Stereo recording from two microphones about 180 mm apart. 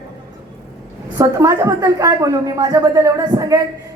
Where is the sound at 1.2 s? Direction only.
15° right (ahead or behind).